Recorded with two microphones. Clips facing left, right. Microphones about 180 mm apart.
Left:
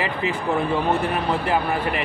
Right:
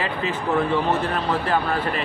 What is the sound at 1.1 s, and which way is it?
Speech, 15° left (ahead or behind).